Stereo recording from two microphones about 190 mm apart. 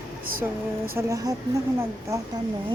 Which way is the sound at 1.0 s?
20° right (ahead or behind).